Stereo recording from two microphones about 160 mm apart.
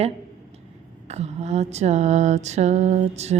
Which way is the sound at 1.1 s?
45° right (ahead or behind).